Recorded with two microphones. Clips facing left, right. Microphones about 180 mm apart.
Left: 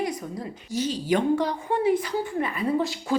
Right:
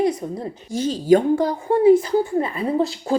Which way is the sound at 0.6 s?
50° right (ahead or behind).